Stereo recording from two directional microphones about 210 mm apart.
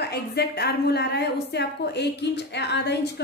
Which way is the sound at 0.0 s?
50° left (ahead or behind).